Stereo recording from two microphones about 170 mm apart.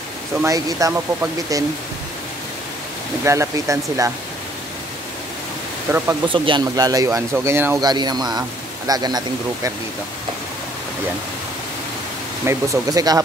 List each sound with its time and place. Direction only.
0.4 s speech: 20° right (ahead or behind)
3.3 s speech: 15° right (ahead or behind)
5.9 s speech: 15° right (ahead or behind)
6.2 s speech: 30° right (ahead or behind)
12.4 s speech: 20° right (ahead or behind)